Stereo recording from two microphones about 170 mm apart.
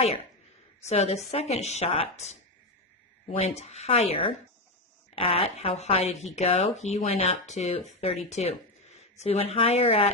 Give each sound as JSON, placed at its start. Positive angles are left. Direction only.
{"t": 0.9, "sound": "speech", "side_deg": 40}